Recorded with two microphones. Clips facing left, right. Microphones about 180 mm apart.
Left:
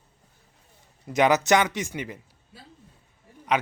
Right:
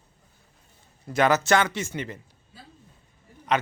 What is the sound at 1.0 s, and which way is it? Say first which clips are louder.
Speech: left 1 dB; 15° left (ahead or behind).